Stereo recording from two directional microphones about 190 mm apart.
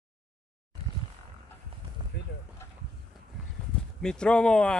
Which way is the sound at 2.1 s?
60° left (ahead or behind).